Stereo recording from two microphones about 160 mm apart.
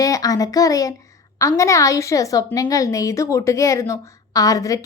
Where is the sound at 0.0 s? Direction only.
20° left (ahead or behind).